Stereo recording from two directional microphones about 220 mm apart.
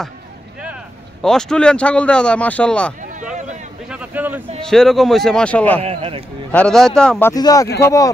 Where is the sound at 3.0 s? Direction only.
35° right (ahead or behind).